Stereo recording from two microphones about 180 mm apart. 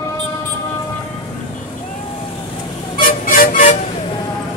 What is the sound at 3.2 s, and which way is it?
Music, 50° left (ahead or behind).